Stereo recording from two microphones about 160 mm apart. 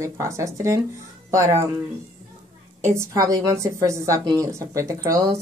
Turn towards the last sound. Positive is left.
turn(degrees=-20)  # may be behind; listen again after turning